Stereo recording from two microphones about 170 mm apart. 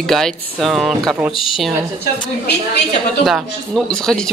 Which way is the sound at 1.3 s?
30° left (ahead or behind).